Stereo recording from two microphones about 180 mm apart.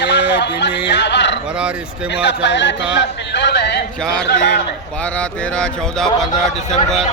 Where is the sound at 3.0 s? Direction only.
75° left (ahead or behind).